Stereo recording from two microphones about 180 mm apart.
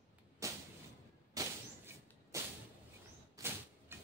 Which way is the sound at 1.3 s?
15° right (ahead or behind).